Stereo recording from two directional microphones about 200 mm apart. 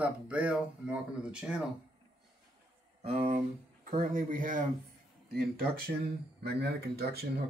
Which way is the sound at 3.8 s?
40° right (ahead or behind).